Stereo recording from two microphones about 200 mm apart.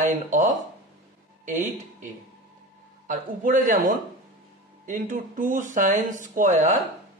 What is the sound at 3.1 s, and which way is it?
Speech, 40° right (ahead or behind).